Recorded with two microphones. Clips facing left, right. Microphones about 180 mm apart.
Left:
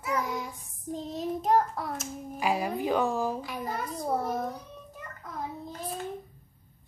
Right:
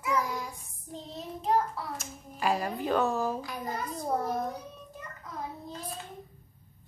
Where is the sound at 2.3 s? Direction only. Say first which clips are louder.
Left 1 dB; 10° left (ahead or behind).